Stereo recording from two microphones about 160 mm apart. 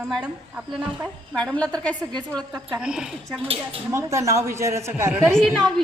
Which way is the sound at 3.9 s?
20° right (ahead or behind).